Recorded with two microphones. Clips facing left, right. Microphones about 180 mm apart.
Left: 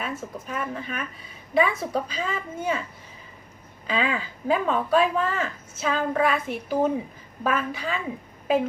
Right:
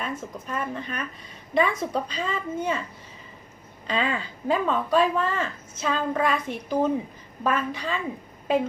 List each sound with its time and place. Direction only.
0.0 s speech: 5° left (ahead or behind)
3.8 s speech: 5° left (ahead or behind)